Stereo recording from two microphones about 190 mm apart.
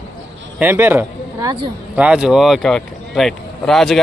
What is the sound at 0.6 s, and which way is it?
A man's voice, 10° right (ahead or behind).